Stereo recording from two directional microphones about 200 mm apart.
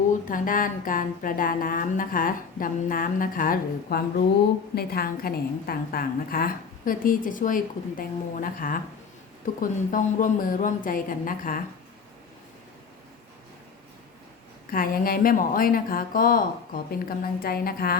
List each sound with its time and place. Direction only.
0.3 s a woman's voice: 45° left (ahead or behind)
14.7 s a woman's voice: 45° left (ahead or behind)